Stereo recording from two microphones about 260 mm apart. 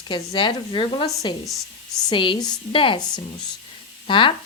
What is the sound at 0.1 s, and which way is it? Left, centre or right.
Speech, centre.